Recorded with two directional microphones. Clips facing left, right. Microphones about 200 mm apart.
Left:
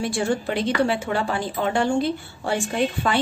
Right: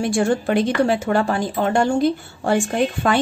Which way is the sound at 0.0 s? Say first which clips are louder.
Right 4 dB; 50° right (ahead or behind).